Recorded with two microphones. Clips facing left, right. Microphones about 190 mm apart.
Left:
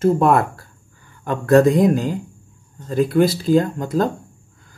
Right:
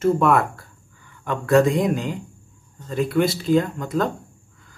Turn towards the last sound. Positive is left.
turn(degrees=35)  # may be behind; listen again after turning